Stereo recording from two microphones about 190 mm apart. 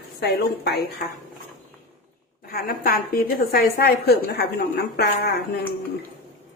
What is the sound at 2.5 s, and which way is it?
A woman's voice, 50° left (ahead or behind).